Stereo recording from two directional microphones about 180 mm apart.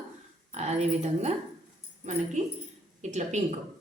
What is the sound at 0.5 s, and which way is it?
A woman's voice, 40° right (ahead or behind).